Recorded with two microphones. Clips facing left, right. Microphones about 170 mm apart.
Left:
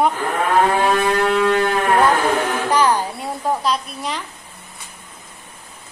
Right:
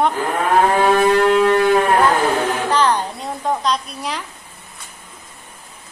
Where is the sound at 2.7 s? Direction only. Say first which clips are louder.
Left 2 dB; 10° left (ahead or behind).